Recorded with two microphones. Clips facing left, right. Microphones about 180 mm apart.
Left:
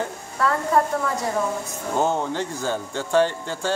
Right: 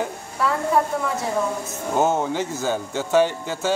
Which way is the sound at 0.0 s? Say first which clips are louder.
Even; 5° right (ahead or behind).